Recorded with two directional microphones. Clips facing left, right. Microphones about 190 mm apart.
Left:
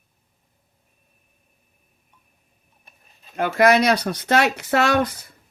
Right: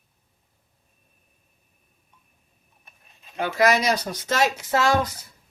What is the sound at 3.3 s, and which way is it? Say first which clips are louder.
Speech: left 4 dB; 55° left (ahead or behind).